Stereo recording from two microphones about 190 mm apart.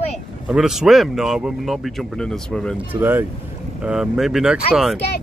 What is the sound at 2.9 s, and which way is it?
Speech, 10° right (ahead or behind).